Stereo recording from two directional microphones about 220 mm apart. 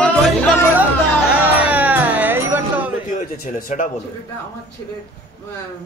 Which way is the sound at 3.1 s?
35° left (ahead or behind).